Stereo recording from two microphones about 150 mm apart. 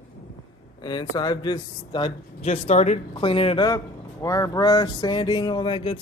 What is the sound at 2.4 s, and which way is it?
Speech, 45° left (ahead or behind).